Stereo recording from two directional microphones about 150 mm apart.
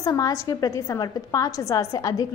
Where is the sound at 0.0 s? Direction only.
25° left (ahead or behind).